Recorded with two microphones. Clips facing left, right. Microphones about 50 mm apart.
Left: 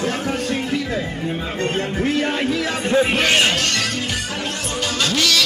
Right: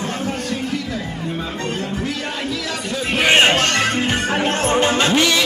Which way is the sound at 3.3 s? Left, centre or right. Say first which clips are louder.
Right 3 dB; right.